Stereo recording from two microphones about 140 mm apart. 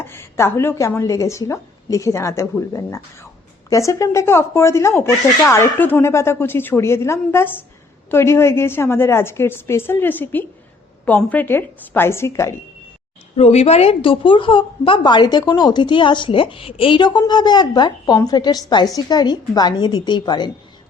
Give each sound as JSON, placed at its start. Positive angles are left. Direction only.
{"t": 0.0, "sound": "a woman's voice", "side_deg": 15}
{"t": 13.3, "sound": "a woman's voice", "side_deg": 50}